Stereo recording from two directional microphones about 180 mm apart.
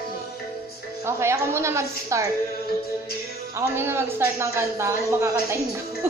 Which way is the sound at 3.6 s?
15° right (ahead or behind).